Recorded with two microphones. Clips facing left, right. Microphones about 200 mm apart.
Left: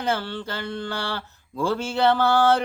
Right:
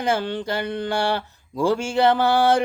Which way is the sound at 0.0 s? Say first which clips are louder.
Right 4 dB; 15° right (ahead or behind).